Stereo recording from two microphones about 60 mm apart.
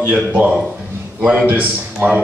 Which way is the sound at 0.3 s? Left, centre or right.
Right.